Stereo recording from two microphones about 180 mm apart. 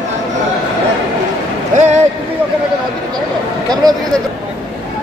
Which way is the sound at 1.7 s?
40° right (ahead or behind).